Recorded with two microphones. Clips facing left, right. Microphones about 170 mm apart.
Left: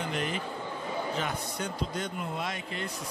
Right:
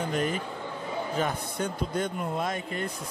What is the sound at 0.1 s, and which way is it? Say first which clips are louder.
Speech: right 4 dB; 45° right (ahead or behind).